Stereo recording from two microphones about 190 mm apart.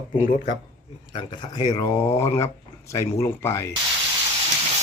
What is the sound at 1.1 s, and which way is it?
Speech, 25° left (ahead or behind).